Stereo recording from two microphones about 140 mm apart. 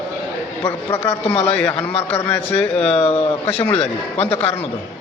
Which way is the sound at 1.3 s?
45° left (ahead or behind).